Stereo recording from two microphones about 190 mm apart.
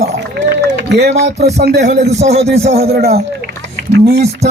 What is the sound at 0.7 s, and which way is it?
Boat, 60° right (ahead or behind).